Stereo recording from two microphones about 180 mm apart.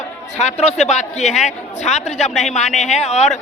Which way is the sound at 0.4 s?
35° left (ahead or behind).